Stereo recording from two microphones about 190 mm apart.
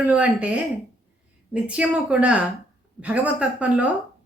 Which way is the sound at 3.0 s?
5° right (ahead or behind).